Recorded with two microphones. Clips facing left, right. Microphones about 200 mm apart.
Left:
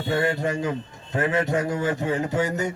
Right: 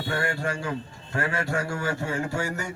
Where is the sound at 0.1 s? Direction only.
20° left (ahead or behind).